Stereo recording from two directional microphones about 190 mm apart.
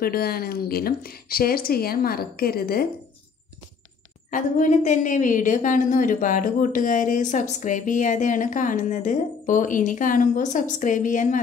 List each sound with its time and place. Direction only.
0.0 s a woman's voice: 55° left (ahead or behind)
4.3 s a woman's voice: 40° left (ahead or behind)